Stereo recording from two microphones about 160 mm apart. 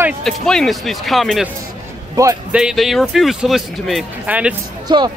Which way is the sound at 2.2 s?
20° right (ahead or behind).